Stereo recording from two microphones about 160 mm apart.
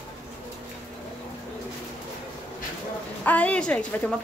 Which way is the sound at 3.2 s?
10° left (ahead or behind).